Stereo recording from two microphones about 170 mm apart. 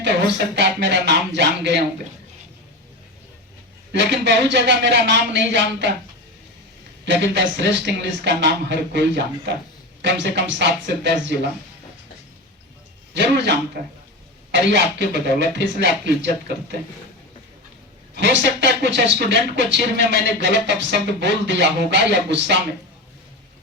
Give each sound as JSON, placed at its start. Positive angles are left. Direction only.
{"t": 0.0, "sound": "speech", "side_deg": -90}
{"t": 3.9, "sound": "speech", "side_deg": -90}
{"t": 7.0, "sound": "speech", "side_deg": -90}
{"t": 13.1, "sound": "speech", "side_deg": -85}
{"t": 18.1, "sound": "speech", "side_deg": -90}